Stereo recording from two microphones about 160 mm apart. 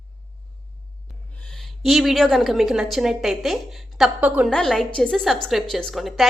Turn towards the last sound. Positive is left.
turn(degrees=0)  # may be behind; listen again after turning